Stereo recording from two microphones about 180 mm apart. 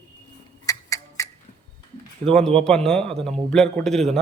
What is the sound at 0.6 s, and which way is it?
Tick-tock, 20° left (ahead or behind).